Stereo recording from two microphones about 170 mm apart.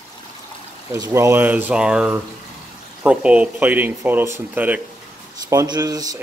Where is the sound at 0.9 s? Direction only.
20° right (ahead or behind).